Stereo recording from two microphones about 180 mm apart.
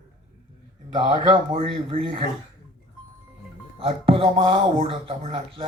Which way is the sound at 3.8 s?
30° right (ahead or behind).